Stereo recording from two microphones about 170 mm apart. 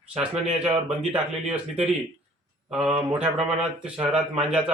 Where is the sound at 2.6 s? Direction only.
5° right (ahead or behind).